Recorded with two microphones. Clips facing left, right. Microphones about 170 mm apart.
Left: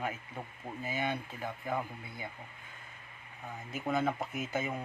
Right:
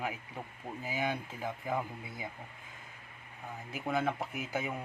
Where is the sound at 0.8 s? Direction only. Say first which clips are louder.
Even; 10° right (ahead or behind).